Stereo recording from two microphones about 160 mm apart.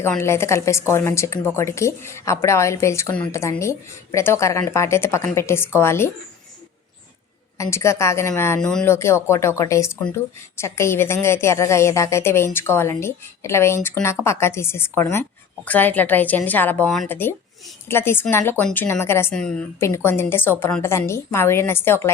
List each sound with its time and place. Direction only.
0.0 s a woman's voice: 15° left (ahead or behind)
7.6 s a woman's voice: 15° left (ahead or behind)